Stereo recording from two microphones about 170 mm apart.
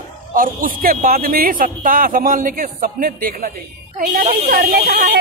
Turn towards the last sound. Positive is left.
turn(degrees=-65)  # may be behind; listen again after turning